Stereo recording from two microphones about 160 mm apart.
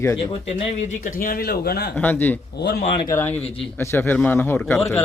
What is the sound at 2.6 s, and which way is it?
Speech, 90° left.